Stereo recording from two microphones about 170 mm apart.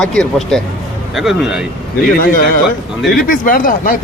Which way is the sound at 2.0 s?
60° left (ahead or behind).